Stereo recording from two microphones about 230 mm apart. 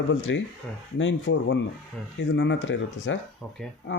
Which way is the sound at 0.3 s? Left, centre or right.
Left.